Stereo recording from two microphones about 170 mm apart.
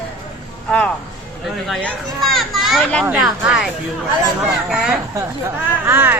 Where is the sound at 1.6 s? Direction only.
Centre (ahead or behind).